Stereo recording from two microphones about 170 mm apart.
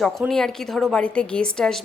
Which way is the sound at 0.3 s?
Centre (ahead or behind).